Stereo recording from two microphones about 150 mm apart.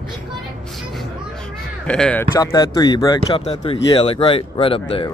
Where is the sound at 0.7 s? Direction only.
Centre (ahead or behind).